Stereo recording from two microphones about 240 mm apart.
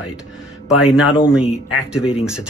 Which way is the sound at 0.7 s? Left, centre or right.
Centre.